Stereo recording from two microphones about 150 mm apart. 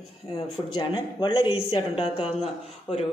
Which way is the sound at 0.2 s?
20° left (ahead or behind).